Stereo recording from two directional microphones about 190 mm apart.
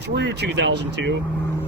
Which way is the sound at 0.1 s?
65° right (ahead or behind).